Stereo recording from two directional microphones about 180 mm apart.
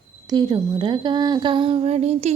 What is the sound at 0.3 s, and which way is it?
Speech, 20° right (ahead or behind).